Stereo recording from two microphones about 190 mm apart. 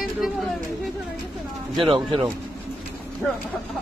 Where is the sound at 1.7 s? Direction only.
25° right (ahead or behind).